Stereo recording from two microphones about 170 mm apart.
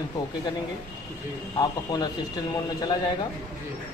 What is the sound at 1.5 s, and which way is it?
Speech, 25° left (ahead or behind).